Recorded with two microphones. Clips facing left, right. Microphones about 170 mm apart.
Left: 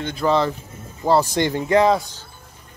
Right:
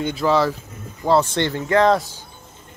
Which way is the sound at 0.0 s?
5° right (ahead or behind).